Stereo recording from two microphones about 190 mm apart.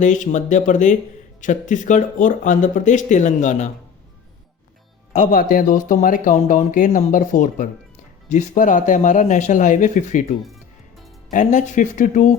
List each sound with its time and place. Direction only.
0.0 s speech: 40° left (ahead or behind)
5.1 s speech: 45° left (ahead or behind)
10.4 s music: centre (ahead or behind)
11.3 s speech: 40° left (ahead or behind)